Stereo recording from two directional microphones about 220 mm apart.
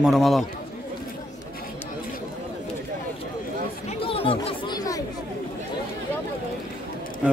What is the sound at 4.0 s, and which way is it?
Chatter, 25° left (ahead or behind).